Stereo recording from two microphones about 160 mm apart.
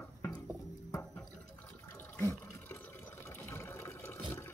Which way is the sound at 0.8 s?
20° left (ahead or behind).